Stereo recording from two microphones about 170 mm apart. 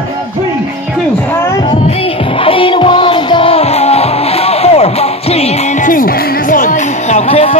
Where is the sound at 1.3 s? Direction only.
15° left (ahead or behind).